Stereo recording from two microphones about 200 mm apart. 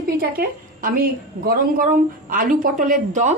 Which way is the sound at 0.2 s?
45° right (ahead or behind).